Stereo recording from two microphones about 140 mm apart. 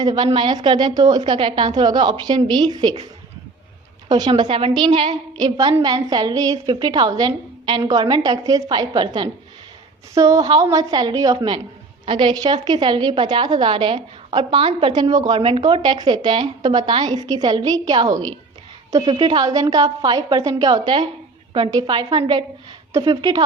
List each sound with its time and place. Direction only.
0.0 s a woman's voice: 30° right (ahead or behind)
4.1 s a woman's voice: 30° right (ahead or behind)